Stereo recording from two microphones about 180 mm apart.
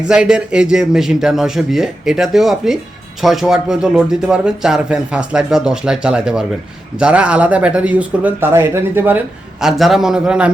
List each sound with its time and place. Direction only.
0.1 s speech: 5° right (ahead or behind)